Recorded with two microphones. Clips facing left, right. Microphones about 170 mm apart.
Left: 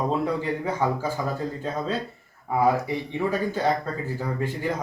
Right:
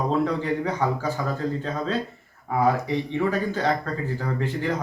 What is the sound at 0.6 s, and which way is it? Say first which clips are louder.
Speech: even; 10° left (ahead or behind).